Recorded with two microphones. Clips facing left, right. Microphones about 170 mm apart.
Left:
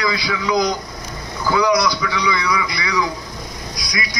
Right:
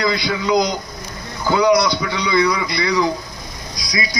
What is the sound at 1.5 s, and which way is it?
Speech, 25° right (ahead or behind).